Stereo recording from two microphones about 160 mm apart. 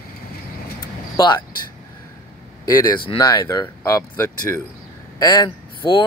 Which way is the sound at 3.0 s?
25° left (ahead or behind).